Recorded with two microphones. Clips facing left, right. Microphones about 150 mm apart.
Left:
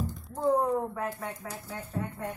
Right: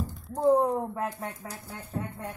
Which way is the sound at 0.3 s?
35° right (ahead or behind).